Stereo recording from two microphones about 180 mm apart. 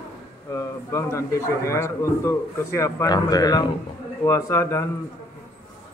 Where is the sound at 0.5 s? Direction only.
15° left (ahead or behind).